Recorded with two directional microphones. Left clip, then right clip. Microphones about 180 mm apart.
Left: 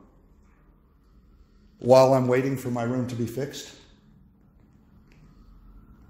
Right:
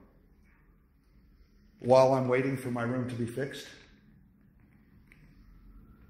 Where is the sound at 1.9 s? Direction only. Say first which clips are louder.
Left 5 dB; 60° left (ahead or behind).